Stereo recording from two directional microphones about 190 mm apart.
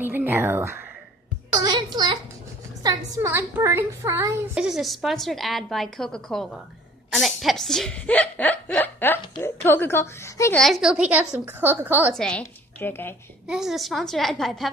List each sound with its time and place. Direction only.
0.0 s a woman's voice: 10° right (ahead or behind)
1.5 s music: 20° right (ahead or behind)
2.8 s a woman's voice: 20° right (ahead or behind)
4.6 s a woman's voice: centre (ahead or behind); by 10.6 s 15° left (ahead or behind)
10.6 s a woman's voice: centre (ahead or behind)
12.1 s speech: 5° left (ahead or behind)
13.5 s a woman's voice: centre (ahead or behind)